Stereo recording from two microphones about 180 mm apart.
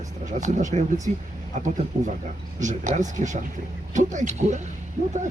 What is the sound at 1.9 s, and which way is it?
Speech, 40° right (ahead or behind).